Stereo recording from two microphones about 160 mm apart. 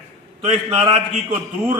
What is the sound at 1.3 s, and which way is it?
Speech, 15° right (ahead or behind).